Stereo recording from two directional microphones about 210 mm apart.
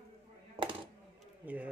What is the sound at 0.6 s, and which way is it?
Coin, 25° right (ahead or behind).